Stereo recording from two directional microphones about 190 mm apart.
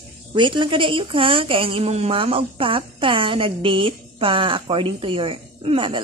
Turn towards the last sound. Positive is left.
turn(degrees=-30)  # may be behind; listen again after turning